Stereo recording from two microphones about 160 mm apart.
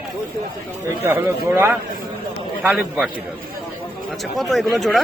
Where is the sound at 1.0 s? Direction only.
15° right (ahead or behind).